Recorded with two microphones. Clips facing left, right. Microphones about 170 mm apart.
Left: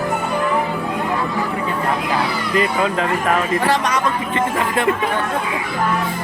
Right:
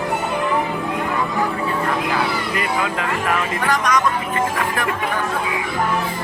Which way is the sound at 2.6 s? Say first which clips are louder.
Left 8 dB; 30° left (ahead or behind).